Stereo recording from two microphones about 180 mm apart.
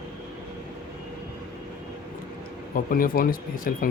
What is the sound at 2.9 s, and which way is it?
Speech, 50° left (ahead or behind).